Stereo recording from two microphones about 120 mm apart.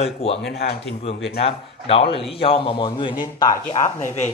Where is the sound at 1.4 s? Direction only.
55° left (ahead or behind).